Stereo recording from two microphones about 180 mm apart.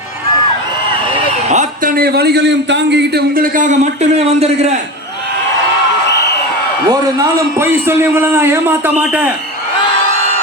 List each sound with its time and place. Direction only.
1.5 s a man's voice: 45° right (ahead or behind)
6.1 s a sound: 70° left (ahead or behind)
6.8 s a man's voice: 20° right (ahead or behind)